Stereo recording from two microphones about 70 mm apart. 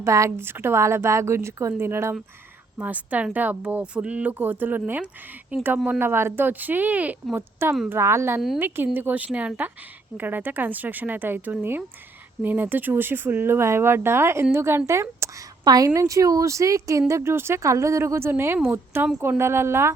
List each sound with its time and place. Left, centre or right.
0.0 s speech: right
0.3 s speech: right
2.7 s speech: right
7.3 s speech: right
15.2 s a sound: right
15.6 s a woman's voice: right
16.0 s speech: right